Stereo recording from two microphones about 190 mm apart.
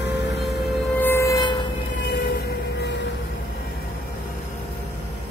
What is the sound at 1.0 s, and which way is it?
Siren, 15° left (ahead or behind).